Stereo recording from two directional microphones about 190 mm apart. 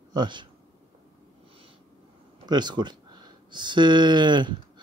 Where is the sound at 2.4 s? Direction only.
20° right (ahead or behind).